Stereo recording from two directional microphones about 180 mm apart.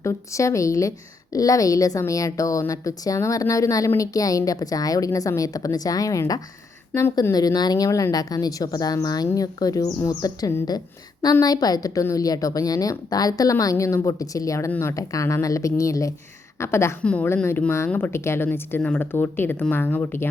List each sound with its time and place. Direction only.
0.0 s a woman's voice: 15° left (ahead or behind)